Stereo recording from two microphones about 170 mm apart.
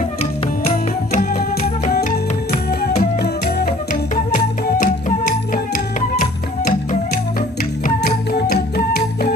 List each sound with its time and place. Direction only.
0.2 s music: 40° left (ahead or behind)
1.9 s music: 65° left (ahead or behind)